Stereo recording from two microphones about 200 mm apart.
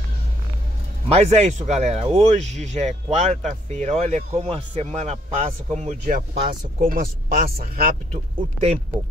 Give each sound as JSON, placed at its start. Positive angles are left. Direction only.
{"t": 1.1, "sound": "speech", "side_deg": -35}
{"t": 8.1, "sound": "speech", "side_deg": -30}